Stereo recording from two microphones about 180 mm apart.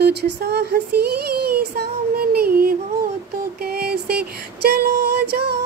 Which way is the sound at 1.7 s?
60° right (ahead or behind).